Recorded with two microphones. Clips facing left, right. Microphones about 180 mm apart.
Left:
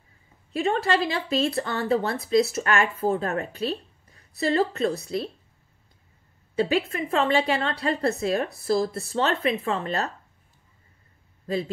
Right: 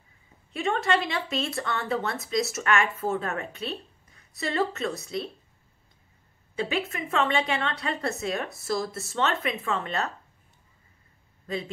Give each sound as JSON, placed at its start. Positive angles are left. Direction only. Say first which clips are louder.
{"t": 0.5, "sound": "a woman's voice", "louder": "left 2 dB", "side_deg": 35}
{"t": 6.5, "sound": "a woman's voice", "louder": "left 5 dB", "side_deg": 35}
{"t": 11.4, "sound": "speech", "louder": "left 5 dB", "side_deg": 35}